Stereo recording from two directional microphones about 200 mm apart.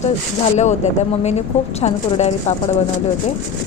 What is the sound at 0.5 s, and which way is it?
Speech, 35° left (ahead or behind).